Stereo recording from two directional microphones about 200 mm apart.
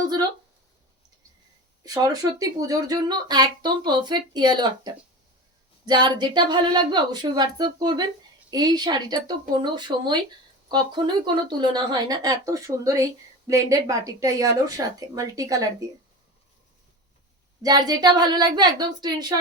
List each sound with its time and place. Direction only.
0.0 s a sound: 20° right (ahead or behind)
2.4 s speech: 20° right (ahead or behind)
17.6 s speech: 20° right (ahead or behind)